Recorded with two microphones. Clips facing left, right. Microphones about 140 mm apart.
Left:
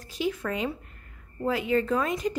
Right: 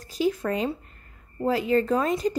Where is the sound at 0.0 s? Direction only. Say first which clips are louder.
Right 4 dB; 40° right (ahead or behind).